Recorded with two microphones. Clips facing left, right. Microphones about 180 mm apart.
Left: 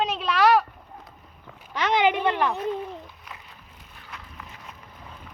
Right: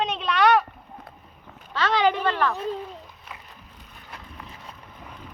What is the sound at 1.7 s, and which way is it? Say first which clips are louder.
Speech: even; 20° left (ahead or behind).